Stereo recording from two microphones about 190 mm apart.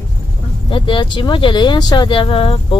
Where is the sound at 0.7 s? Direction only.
25° left (ahead or behind).